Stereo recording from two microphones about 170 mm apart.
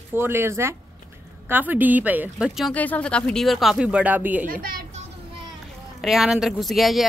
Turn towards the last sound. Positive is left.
turn(degrees=0)  # may be behind; listen again after turning